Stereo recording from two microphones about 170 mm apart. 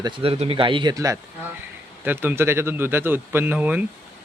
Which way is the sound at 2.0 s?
10° right (ahead or behind).